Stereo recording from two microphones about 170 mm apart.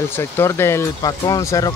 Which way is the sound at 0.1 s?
15° left (ahead or behind).